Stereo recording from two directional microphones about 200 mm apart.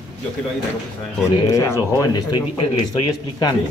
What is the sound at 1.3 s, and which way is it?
Speech, 15° left (ahead or behind).